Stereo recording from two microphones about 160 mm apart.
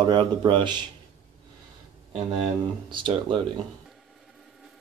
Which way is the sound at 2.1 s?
30° right (ahead or behind).